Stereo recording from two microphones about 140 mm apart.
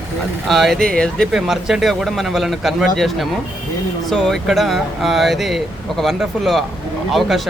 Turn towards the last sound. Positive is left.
turn(degrees=0)  # may be behind; listen again after turning